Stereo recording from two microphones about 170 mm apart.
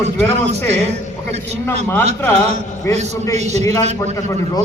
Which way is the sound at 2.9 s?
40° right (ahead or behind).